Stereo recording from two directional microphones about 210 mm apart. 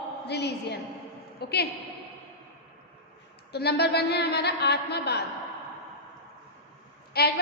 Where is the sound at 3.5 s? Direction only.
50° left (ahead or behind).